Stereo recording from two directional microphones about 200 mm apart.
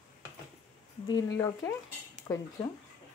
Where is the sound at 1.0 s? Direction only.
15° left (ahead or behind).